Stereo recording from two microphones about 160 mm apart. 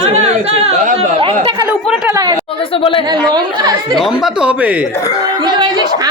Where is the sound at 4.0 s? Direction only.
5° right (ahead or behind).